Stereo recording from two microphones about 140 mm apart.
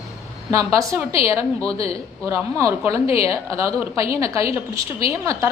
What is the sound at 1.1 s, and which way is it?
Speech, 40° left (ahead or behind).